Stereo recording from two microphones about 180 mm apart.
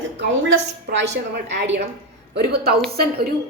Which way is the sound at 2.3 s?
60° right (ahead or behind).